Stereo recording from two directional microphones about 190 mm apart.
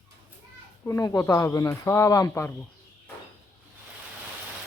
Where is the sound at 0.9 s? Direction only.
15° left (ahead or behind).